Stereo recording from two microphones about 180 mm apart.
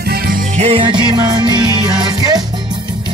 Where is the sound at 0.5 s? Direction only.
35° right (ahead or behind).